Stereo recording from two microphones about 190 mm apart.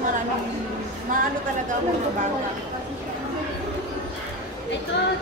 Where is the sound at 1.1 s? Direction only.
45° right (ahead or behind).